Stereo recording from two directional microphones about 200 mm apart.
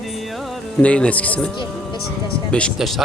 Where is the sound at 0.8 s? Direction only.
5° left (ahead or behind).